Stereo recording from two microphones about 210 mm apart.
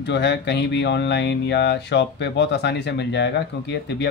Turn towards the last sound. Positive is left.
turn(degrees=55)  # may be behind; listen again after turning